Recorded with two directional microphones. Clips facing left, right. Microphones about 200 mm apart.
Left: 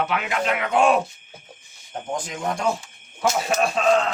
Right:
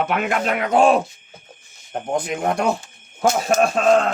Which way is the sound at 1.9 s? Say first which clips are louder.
Right 6 dB; 60° right (ahead or behind).